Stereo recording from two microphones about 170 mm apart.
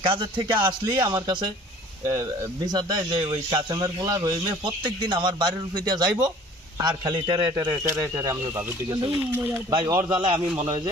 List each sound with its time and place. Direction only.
0.0 s a man's voice: 30° right (ahead or behind)
2.6 s a man's voice: 25° right (ahead or behind)
9.3 s speech: 15° right (ahead or behind)
9.7 s a man's voice: 25° right (ahead or behind)